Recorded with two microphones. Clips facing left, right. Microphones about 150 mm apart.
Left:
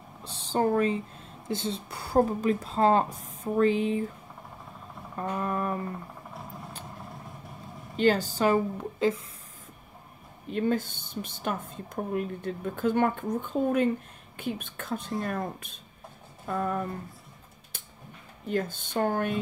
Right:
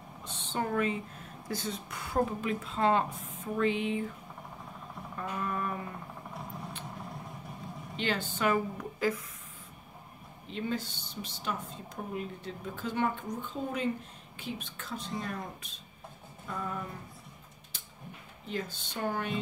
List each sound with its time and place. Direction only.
0.2 s a sound: 35° left (ahead or behind)
1.5 s speech: 25° left (ahead or behind)
5.1 s speech: 40° left (ahead or behind)
6.3 s vehicle: centre (ahead or behind)
8.0 s speech: 40° left (ahead or behind); by 9.2 s 25° left (ahead or behind)
10.5 s speech: 50° left (ahead or behind)
18.5 s speech: 50° left (ahead or behind)